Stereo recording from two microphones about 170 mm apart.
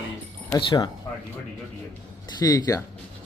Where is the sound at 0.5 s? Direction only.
20° left (ahead or behind).